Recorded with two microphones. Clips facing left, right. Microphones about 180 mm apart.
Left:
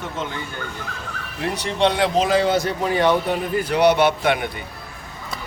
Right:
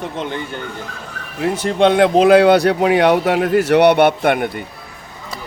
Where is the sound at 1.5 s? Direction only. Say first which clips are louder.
Right 6 dB; 50° right (ahead or behind).